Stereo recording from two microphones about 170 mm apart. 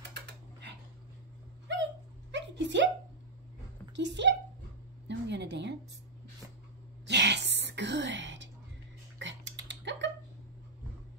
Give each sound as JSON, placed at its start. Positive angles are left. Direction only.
{"t": 0.1, "sound": "typing", "side_deg": -90}
{"t": 2.3, "sound": "a sound", "side_deg": -90}
{"t": 3.9, "sound": "a woman's voice", "side_deg": -90}
{"t": 7.1, "sound": "gasp", "side_deg": -90}
{"t": 9.2, "sound": "typing", "side_deg": -90}